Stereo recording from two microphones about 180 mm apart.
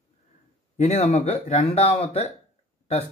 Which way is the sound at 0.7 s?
40° left (ahead or behind).